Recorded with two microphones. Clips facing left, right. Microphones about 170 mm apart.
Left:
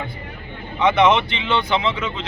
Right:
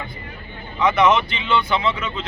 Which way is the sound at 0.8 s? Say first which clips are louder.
Left 1 dB; 25° left (ahead or behind).